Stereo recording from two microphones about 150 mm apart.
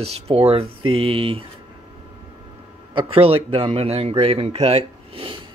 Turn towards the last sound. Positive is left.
turn(degrees=-35)  # may be behind; listen again after turning